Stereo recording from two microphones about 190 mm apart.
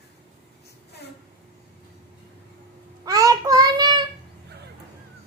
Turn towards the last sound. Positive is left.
turn(degrees=-20)  # may be behind; listen again after turning